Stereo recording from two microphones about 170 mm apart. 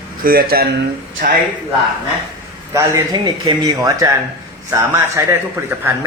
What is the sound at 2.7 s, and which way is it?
A man's voice, 15° right (ahead or behind).